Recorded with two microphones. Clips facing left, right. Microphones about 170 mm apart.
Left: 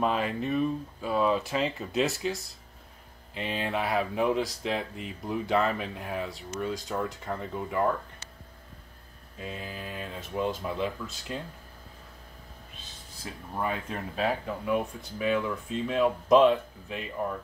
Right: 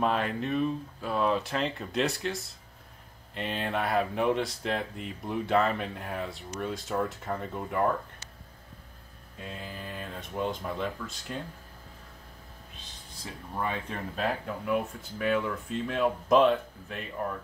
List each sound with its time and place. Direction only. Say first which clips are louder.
0.0 s speech: even; centre (ahead or behind)
9.4 s speech: left 2 dB; 5° left (ahead or behind)
13.2 s speech: left 1 dB; 5° left (ahead or behind)